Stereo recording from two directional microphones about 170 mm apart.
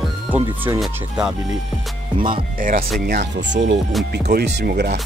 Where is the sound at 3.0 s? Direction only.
65° right (ahead or behind); by 3.8 s 90° right.